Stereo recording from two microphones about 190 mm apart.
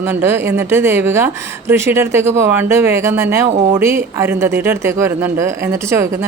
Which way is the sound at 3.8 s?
15° right (ahead or behind).